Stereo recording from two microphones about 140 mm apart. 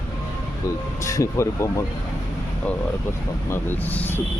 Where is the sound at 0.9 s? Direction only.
20° left (ahead or behind).